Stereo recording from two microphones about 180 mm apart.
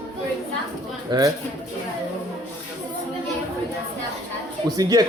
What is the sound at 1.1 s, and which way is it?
Speech, 20° right (ahead or behind).